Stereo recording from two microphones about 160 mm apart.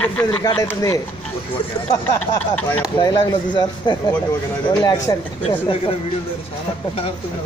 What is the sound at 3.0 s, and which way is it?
A man's voice, 25° left (ahead or behind).